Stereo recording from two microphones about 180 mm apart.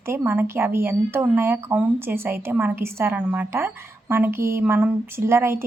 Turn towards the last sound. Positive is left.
turn(degrees=-15)  # may be behind; listen again after turning